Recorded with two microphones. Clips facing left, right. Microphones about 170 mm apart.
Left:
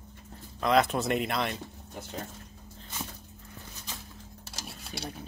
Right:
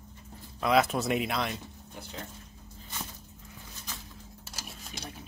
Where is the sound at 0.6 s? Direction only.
5° right (ahead or behind).